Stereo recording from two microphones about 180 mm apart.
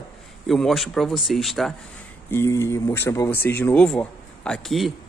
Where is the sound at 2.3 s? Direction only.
15° left (ahead or behind).